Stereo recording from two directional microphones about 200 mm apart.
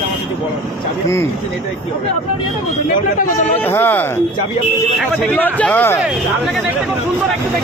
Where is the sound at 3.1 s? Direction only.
40° left (ahead or behind).